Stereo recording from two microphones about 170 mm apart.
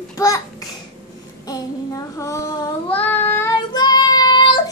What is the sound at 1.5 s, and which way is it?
Child singing, 20° left (ahead or behind).